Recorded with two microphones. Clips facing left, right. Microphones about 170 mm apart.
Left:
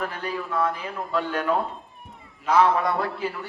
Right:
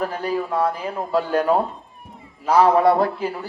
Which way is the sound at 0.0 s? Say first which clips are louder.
Right 6 dB; 35° right (ahead or behind).